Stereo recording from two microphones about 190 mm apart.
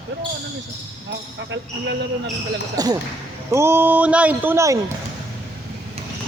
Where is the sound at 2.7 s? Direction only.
20° right (ahead or behind).